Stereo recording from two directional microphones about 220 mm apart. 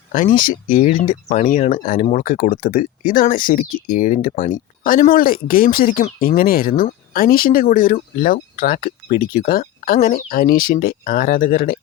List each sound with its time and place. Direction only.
0.1 s speech: 40° left (ahead or behind)